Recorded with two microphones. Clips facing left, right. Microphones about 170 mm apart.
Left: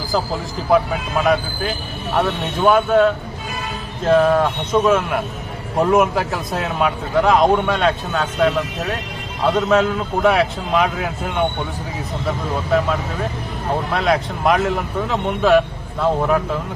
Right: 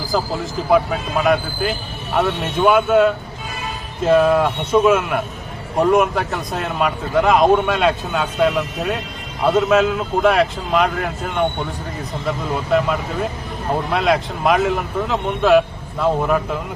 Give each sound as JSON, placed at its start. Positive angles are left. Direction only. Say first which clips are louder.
{"t": 0.7, "sound": "speech", "louder": "even", "side_deg": 0}
{"t": 12.7, "sound": "speech", "louder": "right 1 dB", "side_deg": 0}
{"t": 13.9, "sound": "speech", "louder": "right 1 dB", "side_deg": 0}